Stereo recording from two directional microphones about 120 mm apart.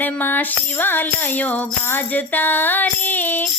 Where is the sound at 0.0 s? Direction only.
15° left (ahead or behind).